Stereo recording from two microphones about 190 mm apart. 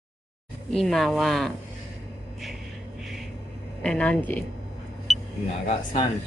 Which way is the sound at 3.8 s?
5° left (ahead or behind).